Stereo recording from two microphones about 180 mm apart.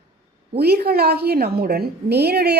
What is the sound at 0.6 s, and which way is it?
A woman's voice, 60° right (ahead or behind).